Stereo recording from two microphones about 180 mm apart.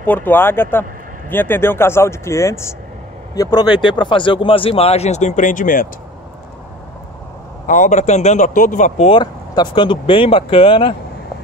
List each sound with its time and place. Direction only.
0.0 s a man's voice: 10° left (ahead or behind); by 5.9 s 50° left (ahead or behind)
7.6 s a man's voice: 45° left (ahead or behind)